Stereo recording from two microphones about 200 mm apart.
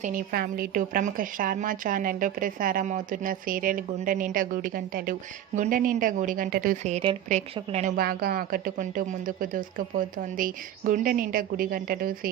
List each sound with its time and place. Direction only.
0.0 s a woman's voice: 45° right (ahead or behind)